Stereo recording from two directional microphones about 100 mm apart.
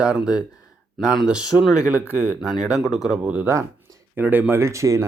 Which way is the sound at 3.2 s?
15° right (ahead or behind).